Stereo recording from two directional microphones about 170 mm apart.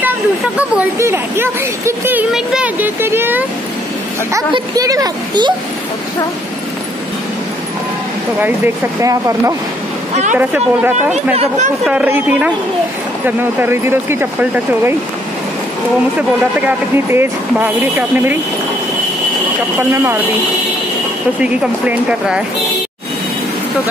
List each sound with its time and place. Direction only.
0.6 s speech: 10° right (ahead or behind)
9.0 s speech: 20° right (ahead or behind)
10.3 s speech: 10° right (ahead or behind)
11.3 s speech: 45° right (ahead or behind)
11.8 s speech: 10° right (ahead or behind)
16.2 s speech: 10° right (ahead or behind)
19.8 s speech: 15° right (ahead or behind)
21.4 s speech: 5° right (ahead or behind)